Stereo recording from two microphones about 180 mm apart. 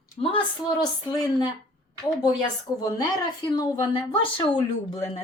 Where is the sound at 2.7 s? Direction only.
20° left (ahead or behind).